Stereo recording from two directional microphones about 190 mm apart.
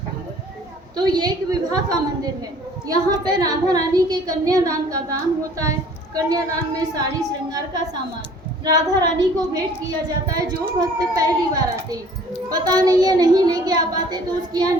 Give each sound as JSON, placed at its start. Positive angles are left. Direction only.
{"t": 0.9, "sound": "a woman's voice", "side_deg": -20}
{"t": 12.5, "sound": "a woman's voice", "side_deg": -20}